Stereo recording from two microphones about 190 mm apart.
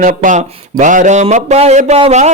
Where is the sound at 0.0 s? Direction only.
45° right (ahead or behind).